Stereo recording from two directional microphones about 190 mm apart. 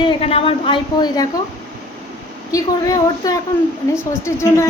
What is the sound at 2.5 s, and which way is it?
A woman's voice, 20° left (ahead or behind).